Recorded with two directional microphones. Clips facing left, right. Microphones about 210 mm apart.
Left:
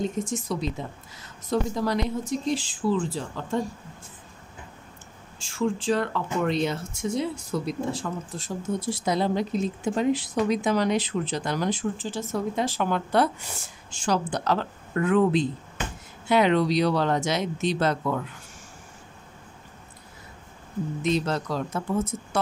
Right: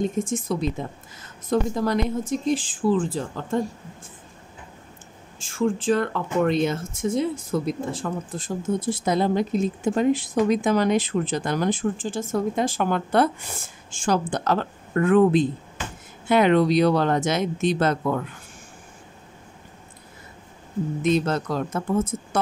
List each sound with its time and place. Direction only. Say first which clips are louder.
0.0 s speech: right 3 dB; 50° right (ahead or behind)
5.4 s speech: right 3 dB; 50° right (ahead or behind)
21.0 s speech: right 4 dB; 50° right (ahead or behind)